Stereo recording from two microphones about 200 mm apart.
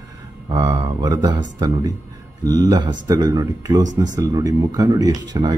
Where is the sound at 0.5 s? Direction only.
15° right (ahead or behind).